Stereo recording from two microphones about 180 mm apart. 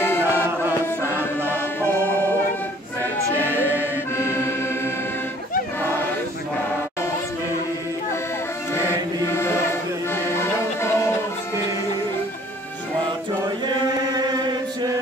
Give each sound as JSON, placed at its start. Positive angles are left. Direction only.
{"t": 0.0, "sound": "chant", "side_deg": 10}
{"t": 1.5, "sound": "music", "side_deg": 15}
{"t": 4.2, "sound": "accordion", "side_deg": 15}
{"t": 8.7, "sound": "music", "side_deg": 15}
{"t": 14.1, "sound": "chant", "side_deg": -25}